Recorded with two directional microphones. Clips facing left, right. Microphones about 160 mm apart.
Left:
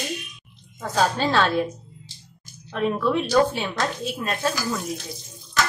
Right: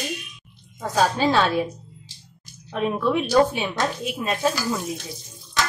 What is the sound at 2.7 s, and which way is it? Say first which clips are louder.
Speech: even; 10° right (ahead or behind).